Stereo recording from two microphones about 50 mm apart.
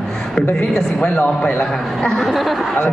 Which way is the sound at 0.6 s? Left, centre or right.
Centre.